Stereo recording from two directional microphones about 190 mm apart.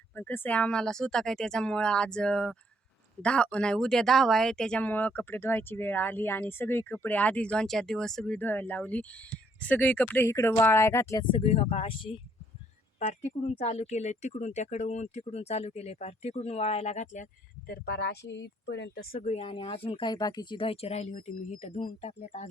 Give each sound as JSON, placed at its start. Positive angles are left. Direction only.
{"t": 0.2, "sound": "speech", "side_deg": 10}
{"t": 11.3, "sound": "speech", "side_deg": 30}
{"t": 17.7, "sound": "speech", "side_deg": 60}
{"t": 19.1, "sound": "speech", "side_deg": 35}